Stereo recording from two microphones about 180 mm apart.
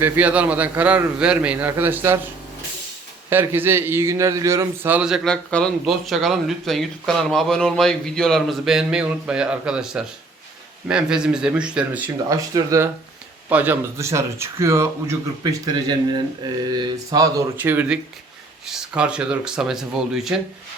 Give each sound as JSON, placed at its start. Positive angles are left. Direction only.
{"t": 0.0, "sound": "speech", "side_deg": -10}
{"t": 3.2, "sound": "a man's voice", "side_deg": -10}